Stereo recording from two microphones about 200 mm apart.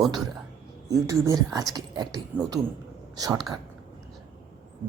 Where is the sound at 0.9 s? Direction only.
15° right (ahead or behind).